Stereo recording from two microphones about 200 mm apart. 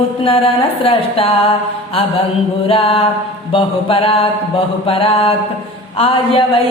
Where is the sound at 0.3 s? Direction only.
30° left (ahead or behind).